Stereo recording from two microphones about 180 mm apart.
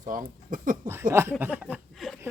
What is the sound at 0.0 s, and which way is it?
Speech, 50° right (ahead or behind).